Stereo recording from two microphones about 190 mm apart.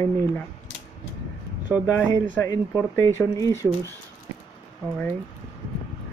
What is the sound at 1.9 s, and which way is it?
Speech, 15° left (ahead or behind).